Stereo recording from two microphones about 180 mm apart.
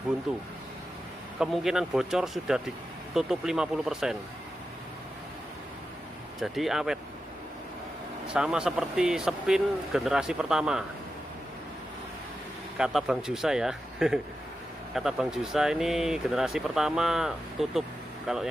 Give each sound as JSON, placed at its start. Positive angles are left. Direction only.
{"t": 1.4, "sound": "speech", "side_deg": 0}
{"t": 6.4, "sound": "speech", "side_deg": 0}
{"t": 8.3, "sound": "speech", "side_deg": -5}
{"t": 12.7, "sound": "speech", "side_deg": -5}